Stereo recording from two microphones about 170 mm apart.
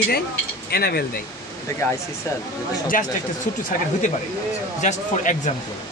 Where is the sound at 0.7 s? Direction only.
65° left (ahead or behind).